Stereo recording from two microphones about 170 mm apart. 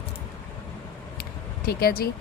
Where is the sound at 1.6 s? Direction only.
65° left (ahead or behind).